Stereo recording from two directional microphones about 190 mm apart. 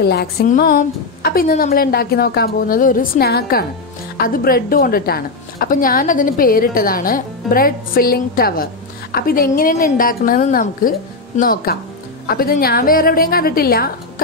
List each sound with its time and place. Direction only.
0.0 s speech: 55° left (ahead or behind)
0.5 s a woman's voice: 45° left (ahead or behind)